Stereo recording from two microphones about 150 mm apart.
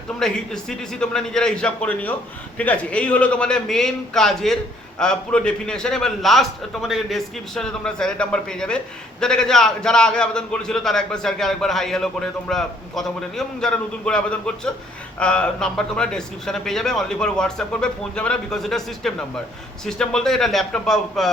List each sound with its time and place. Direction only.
0.2 s a man's voice: 5° left (ahead or behind)